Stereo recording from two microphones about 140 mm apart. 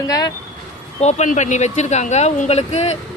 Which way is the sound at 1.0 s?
55° left (ahead or behind).